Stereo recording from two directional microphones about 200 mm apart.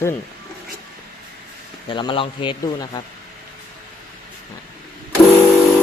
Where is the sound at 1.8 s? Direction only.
25° left (ahead or behind).